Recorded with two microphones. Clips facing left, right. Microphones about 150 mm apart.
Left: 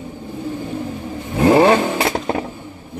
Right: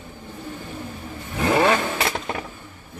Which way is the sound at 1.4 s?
30° left (ahead or behind).